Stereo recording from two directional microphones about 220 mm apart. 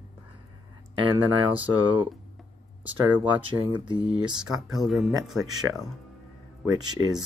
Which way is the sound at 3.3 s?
20° right (ahead or behind).